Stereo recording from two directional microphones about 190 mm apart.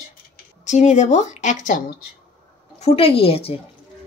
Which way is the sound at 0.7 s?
40° left (ahead or behind).